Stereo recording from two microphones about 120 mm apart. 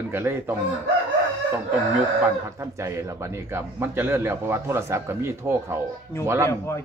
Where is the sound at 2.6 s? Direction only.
25° right (ahead or behind).